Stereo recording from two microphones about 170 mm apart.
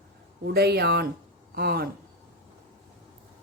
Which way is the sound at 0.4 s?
75° right (ahead or behind).